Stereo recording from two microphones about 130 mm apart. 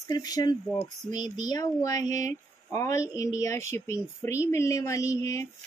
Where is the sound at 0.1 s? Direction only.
30° left (ahead or behind).